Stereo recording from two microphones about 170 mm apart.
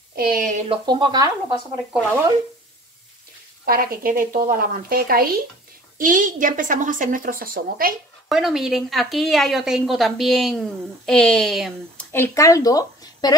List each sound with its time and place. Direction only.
0.1 s speech: 60° right (ahead or behind)
0.7 s speech: 25° right (ahead or behind)
3.6 s a woman's voice: 60° right (ahead or behind)
8.3 s a woman's voice: centre (ahead or behind)
12.1 s a woman's voice: 15° left (ahead or behind)